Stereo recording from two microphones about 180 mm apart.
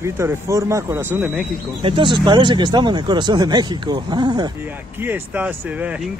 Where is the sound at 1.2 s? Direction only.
Centre (ahead or behind).